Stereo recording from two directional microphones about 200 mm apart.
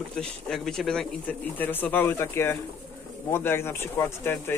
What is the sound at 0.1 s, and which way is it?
Speech, 5° left (ahead or behind).